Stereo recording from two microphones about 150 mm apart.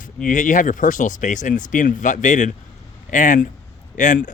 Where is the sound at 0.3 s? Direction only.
60° left (ahead or behind).